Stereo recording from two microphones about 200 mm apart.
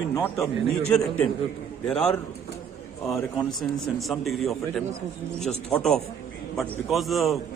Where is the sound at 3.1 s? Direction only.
Centre (ahead or behind).